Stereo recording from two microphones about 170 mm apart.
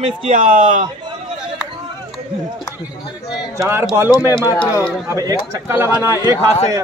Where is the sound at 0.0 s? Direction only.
45° right (ahead or behind).